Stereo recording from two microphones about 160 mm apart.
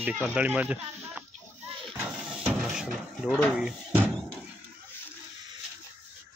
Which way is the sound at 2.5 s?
5° right (ahead or behind).